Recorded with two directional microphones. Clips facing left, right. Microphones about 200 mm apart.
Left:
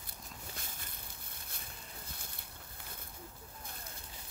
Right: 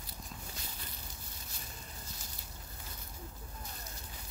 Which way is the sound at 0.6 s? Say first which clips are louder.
Right 2 dB; 50° left (ahead or behind).